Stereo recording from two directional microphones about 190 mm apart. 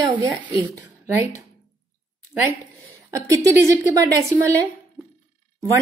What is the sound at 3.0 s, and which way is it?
Speech, 15° right (ahead or behind).